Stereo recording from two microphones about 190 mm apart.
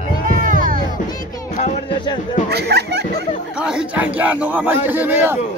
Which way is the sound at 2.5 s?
60° right (ahead or behind).